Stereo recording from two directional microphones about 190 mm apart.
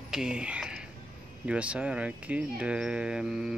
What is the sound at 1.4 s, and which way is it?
Speech, 5° right (ahead or behind).